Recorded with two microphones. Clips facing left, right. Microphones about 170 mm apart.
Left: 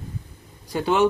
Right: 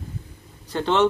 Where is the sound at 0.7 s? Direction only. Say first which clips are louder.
Even; 10° left (ahead or behind).